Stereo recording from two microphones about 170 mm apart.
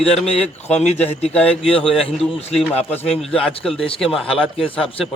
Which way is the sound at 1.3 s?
10° left (ahead or behind).